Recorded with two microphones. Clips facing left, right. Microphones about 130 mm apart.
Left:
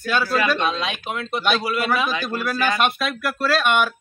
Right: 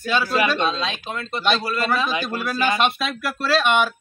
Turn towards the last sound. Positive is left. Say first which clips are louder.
# even
turn(degrees=5)  # may be behind; listen again after turning